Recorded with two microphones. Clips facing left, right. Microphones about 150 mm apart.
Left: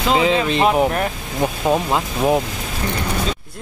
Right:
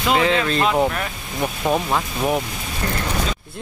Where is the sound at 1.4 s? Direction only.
20° left (ahead or behind).